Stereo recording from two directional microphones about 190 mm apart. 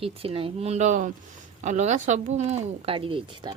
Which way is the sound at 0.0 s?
30° right (ahead or behind).